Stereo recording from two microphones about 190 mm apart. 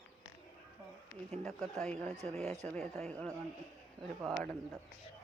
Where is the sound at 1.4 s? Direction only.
5° left (ahead or behind).